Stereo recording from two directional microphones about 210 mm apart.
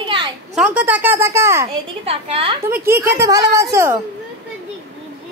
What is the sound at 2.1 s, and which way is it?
Speech, 30° right (ahead or behind).